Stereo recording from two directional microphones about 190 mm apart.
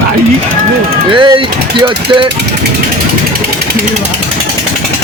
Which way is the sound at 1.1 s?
25° right (ahead or behind).